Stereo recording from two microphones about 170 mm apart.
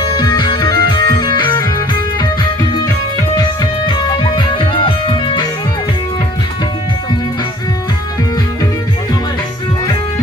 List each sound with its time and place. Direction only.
0.2 s music: 25° left (ahead or behind)
3.3 s music: 30° left (ahead or behind)